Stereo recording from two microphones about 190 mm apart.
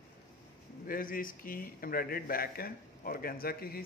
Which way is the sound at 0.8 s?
50° left (ahead or behind).